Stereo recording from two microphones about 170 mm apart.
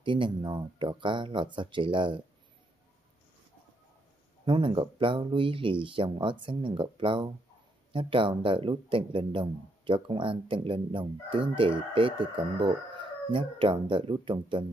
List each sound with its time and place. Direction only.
0.0 s speech: 30° right (ahead or behind)
4.5 s speech: 30° right (ahead or behind)